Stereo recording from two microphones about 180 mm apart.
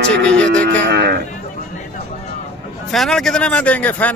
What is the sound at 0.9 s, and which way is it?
Speech, 65° right (ahead or behind).